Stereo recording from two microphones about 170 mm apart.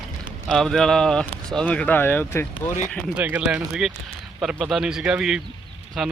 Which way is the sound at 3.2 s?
10° right (ahead or behind).